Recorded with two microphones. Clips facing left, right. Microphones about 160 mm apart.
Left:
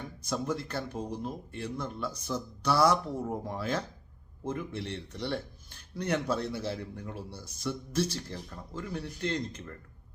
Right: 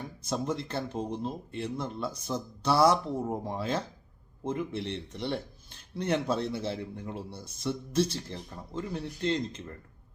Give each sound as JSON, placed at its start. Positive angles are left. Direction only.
{"t": 0.3, "sound": "a man's voice", "side_deg": -25}